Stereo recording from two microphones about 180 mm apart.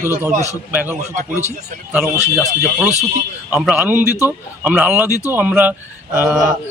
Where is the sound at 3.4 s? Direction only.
5° right (ahead or behind).